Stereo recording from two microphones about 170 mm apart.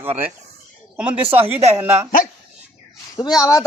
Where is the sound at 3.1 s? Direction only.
20° left (ahead or behind).